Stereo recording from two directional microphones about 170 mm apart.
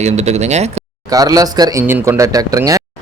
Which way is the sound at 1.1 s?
20° right (ahead or behind).